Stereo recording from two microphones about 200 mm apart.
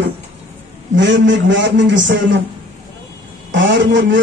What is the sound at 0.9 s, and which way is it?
A man's voice, 65° right (ahead or behind).